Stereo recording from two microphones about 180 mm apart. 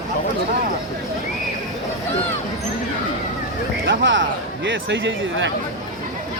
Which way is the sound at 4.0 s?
90° right.